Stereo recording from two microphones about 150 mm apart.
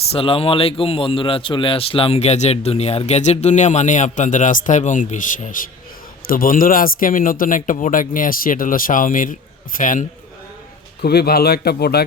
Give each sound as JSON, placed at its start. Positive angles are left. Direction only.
{"t": 0.1, "sound": "a man's voice", "side_deg": 35}
{"t": 11.0, "sound": "a man's voice", "side_deg": 90}